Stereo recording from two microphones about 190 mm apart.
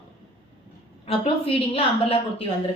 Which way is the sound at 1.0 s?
30° left (ahead or behind).